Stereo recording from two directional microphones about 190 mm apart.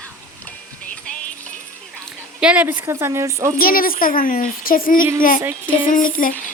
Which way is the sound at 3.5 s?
50° left (ahead or behind).